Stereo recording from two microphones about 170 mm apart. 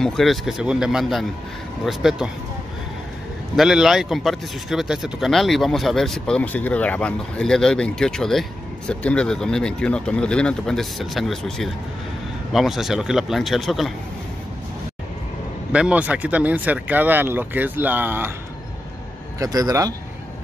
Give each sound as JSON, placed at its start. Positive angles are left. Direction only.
{"t": 0.0, "sound": "speech", "side_deg": 0}
{"t": 3.5, "sound": "speech", "side_deg": -5}
{"t": 15.7, "sound": "speech", "side_deg": -5}
{"t": 19.4, "sound": "speech", "side_deg": -20}